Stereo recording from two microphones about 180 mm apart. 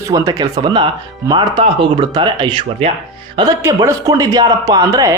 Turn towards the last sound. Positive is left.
turn(degrees=-15)  # may be behind; listen again after turning